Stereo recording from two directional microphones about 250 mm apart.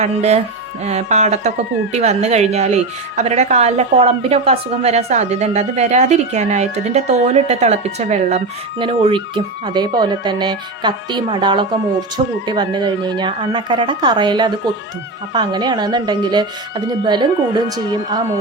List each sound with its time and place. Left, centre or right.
0.0 s speech: right